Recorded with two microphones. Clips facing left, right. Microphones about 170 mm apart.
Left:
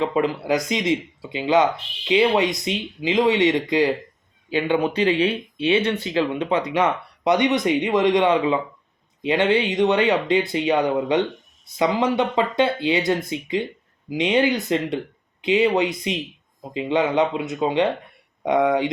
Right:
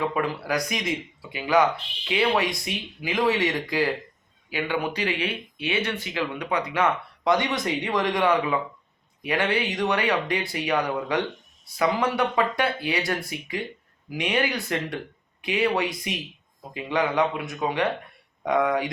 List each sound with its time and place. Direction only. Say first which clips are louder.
0.0 s speech: left 5 dB; 20° left (ahead or behind)